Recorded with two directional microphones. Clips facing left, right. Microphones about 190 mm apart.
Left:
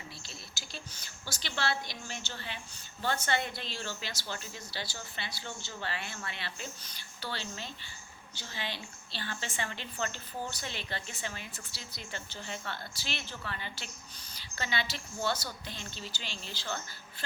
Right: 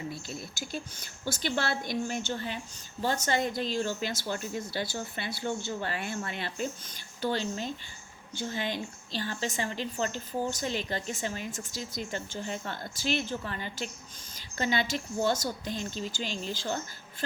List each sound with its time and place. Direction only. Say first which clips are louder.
0.1 s a woman's voice: right 10 dB; 50° right (ahead or behind)